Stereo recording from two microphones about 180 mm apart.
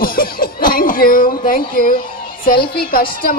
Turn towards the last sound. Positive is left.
turn(degrees=55)  # may be behind; listen again after turning